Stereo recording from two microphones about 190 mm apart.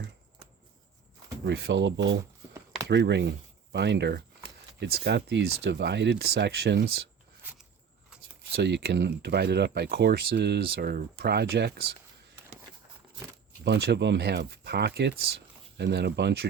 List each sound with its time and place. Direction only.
1.5 s speech: 70° right (ahead or behind)
2.9 s speech: 65° right (ahead or behind)
8.1 s a sound: 5° right (ahead or behind)
8.5 s speech: 60° right (ahead or behind)
13.7 s speech: 60° right (ahead or behind)